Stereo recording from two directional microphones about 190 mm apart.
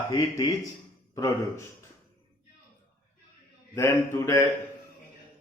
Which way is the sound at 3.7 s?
10° left (ahead or behind).